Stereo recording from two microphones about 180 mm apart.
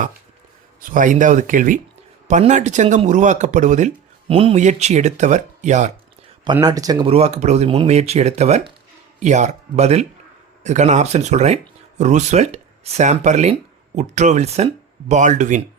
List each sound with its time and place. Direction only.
0.8 s speech: 45° right (ahead or behind)
6.4 s speech: 25° right (ahead or behind); by 15.6 s 45° right (ahead or behind)